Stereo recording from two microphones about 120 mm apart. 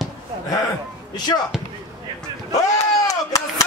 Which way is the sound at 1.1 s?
35° left (ahead or behind).